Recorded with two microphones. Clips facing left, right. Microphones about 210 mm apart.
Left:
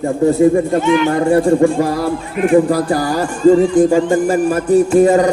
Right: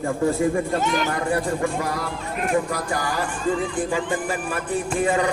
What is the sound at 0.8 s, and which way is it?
Speech, 40° right (ahead or behind).